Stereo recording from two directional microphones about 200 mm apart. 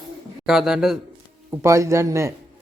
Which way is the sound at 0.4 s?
Centre (ahead or behind).